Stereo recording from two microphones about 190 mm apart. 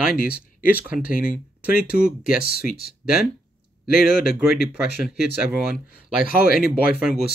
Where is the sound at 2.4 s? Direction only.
55° left (ahead or behind).